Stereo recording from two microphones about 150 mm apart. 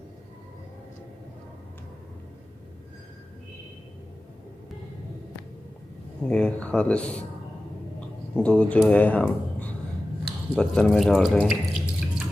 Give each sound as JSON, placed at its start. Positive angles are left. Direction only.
{"t": 6.2, "sound": "speech", "side_deg": 5}
{"t": 8.4, "sound": "speech", "side_deg": 10}